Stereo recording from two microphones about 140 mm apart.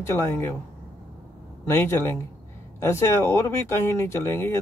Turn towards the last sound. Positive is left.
turn(degrees=15)  # may be behind; listen again after turning